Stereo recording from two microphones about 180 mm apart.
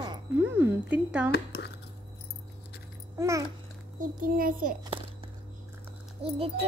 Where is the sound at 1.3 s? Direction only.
70° left (ahead or behind).